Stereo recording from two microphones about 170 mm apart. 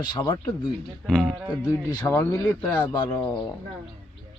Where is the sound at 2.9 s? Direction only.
25° left (ahead or behind).